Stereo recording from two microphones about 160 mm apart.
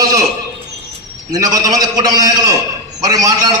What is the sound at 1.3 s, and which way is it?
A man's voice, 20° right (ahead or behind).